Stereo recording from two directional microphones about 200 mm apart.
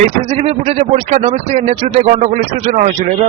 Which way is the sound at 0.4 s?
35° right (ahead or behind).